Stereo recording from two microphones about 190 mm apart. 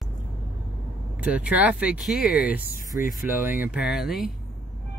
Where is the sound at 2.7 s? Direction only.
45° left (ahead or behind).